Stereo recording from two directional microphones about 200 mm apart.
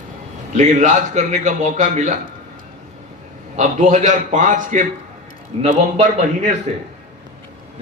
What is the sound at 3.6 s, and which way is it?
A man's voice, 40° right (ahead or behind).